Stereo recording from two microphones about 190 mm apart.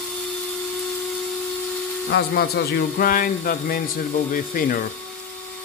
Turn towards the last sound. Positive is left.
turn(degrees=45)  # may be behind; listen again after turning